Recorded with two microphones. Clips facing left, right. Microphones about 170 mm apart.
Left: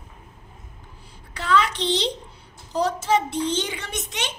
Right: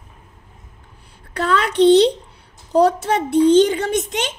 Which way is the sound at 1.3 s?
55° right (ahead or behind).